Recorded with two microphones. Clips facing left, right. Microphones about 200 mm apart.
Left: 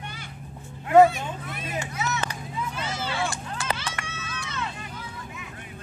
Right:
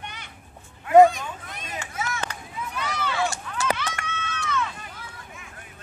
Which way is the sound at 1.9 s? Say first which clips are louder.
Left 2 dB; 50° right (ahead or behind).